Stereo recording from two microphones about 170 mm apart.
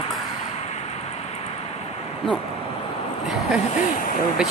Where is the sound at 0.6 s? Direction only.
40° left (ahead or behind).